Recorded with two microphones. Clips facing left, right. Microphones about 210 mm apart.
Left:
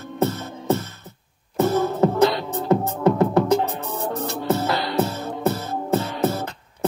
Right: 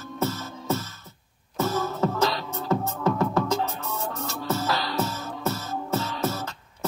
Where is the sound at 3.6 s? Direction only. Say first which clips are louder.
Left 4 dB; 35° left (ahead or behind).